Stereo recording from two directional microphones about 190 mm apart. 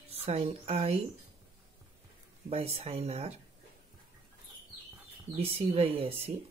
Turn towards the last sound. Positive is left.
turn(degrees=-30)  # may be behind; listen again after turning